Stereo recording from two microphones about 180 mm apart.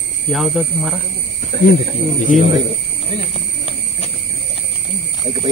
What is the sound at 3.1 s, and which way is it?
Horse, 35° left (ahead or behind).